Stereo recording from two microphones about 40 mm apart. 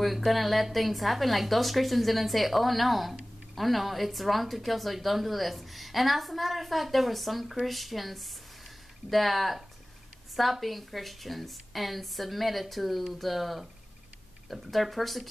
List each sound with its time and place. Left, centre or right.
0.0 s a woman's voice: centre